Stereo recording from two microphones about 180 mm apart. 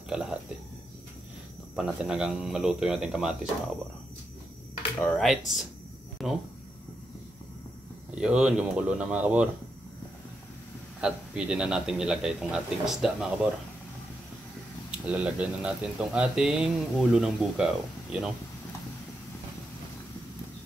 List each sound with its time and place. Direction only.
0.1 s speech: 5° right (ahead or behind)
1.8 s speech: 5° right (ahead or behind)
5.0 s speech: centre (ahead or behind)
8.1 s speech: 5° right (ahead or behind)
11.0 s speech: 5° right (ahead or behind)
14.9 s speech: 5° right (ahead or behind)